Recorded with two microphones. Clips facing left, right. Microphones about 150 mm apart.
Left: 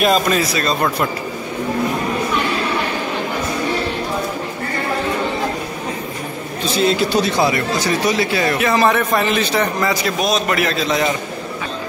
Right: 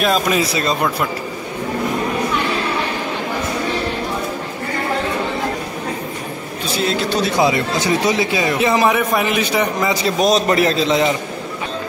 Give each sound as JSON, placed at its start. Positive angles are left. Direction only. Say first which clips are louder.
{"t": 0.3, "sound": "speech", "louder": "even", "side_deg": -20}
{"t": 6.8, "sound": "speech", "louder": "left 3 dB", "side_deg": 0}
{"t": 7.3, "sound": "speech", "louder": "right 1 dB", "side_deg": -20}
{"t": 10.0, "sound": "a man's voice", "louder": "right 3 dB", "side_deg": -35}